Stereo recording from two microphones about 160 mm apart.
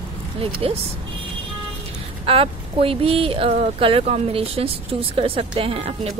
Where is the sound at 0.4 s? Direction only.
35° right (ahead or behind).